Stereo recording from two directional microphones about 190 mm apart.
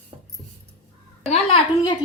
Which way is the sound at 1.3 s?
25° left (ahead or behind).